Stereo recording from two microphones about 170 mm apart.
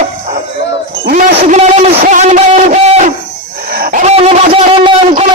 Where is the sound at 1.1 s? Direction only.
45° right (ahead or behind).